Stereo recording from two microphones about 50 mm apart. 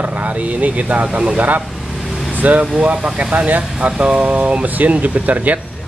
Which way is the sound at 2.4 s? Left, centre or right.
Right.